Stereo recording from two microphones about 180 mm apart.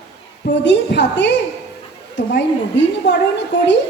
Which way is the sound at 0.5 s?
80° left.